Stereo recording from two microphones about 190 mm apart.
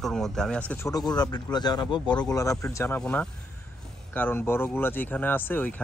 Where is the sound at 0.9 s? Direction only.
20° left (ahead or behind).